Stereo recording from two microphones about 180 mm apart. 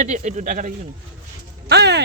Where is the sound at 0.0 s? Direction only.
40° right (ahead or behind).